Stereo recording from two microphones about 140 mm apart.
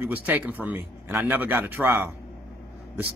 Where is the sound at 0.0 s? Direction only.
10° right (ahead or behind).